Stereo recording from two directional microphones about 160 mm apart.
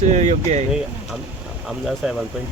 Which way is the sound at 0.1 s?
45° right (ahead or behind).